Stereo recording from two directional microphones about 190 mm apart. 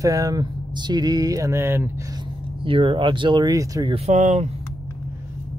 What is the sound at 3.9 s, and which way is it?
Speech, 35° right (ahead or behind).